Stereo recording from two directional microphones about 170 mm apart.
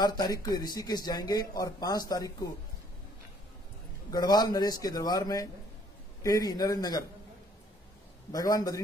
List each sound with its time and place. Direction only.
0.0 s speech: 25° left (ahead or behind)
4.1 s speech: 25° left (ahead or behind)
8.3 s speech: 20° left (ahead or behind)